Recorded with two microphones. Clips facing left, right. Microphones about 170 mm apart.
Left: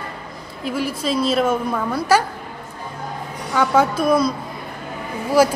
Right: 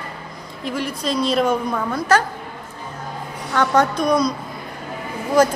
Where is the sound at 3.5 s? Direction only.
10° left (ahead or behind).